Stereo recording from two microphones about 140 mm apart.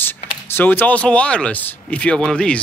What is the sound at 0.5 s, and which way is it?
Speech, 15° left (ahead or behind).